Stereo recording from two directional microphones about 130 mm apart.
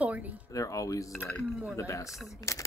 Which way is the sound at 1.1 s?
10° left (ahead or behind).